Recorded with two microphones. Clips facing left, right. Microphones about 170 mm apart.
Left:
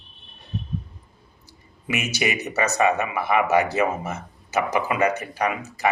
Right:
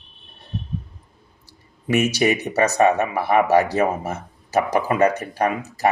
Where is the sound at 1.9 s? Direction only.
35° right (ahead or behind).